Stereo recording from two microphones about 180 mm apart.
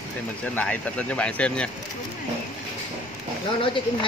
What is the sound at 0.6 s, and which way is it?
Speech, 5° left (ahead or behind).